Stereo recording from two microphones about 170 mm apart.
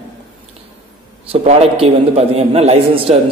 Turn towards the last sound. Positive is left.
turn(degrees=-35)  # may be behind; listen again after turning